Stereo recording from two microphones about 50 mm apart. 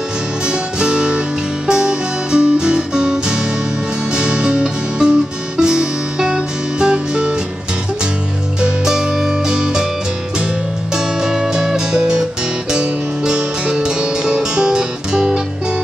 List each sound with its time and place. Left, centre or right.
0.5 s music: centre
8.5 s music: centre
11.0 s music: centre